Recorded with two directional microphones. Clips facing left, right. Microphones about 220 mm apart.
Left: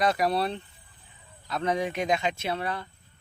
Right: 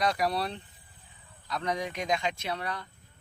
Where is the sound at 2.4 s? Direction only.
25° left (ahead or behind).